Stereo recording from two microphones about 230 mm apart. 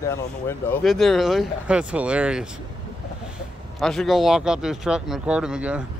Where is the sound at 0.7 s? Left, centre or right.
Centre.